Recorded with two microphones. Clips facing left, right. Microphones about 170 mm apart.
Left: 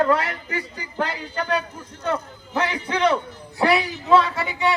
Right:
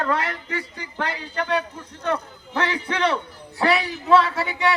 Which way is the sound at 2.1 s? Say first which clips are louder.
Even; 20° left (ahead or behind).